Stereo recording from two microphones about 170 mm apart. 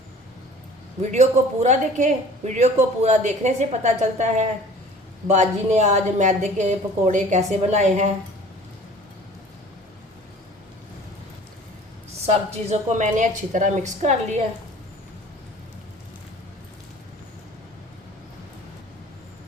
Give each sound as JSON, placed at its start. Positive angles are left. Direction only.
{"t": 1.1, "sound": "speech", "side_deg": -45}
{"t": 12.2, "sound": "speech", "side_deg": -40}